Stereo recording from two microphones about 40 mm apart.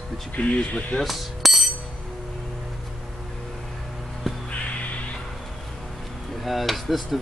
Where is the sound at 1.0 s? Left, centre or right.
Centre.